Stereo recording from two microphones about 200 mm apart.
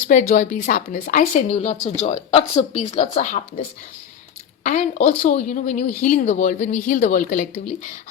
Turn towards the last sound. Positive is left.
turn(degrees=40)  # may be behind; listen again after turning